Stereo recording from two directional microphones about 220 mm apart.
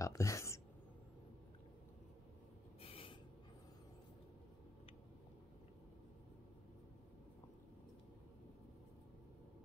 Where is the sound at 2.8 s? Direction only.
25° left (ahead or behind).